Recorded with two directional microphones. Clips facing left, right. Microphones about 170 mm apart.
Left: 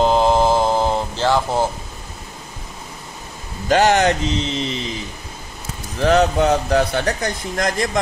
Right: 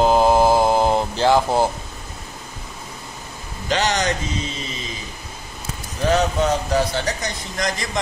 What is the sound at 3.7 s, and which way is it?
Speech, 55° left (ahead or behind).